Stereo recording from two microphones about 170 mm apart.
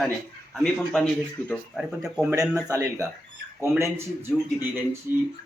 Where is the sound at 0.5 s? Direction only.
Centre (ahead or behind).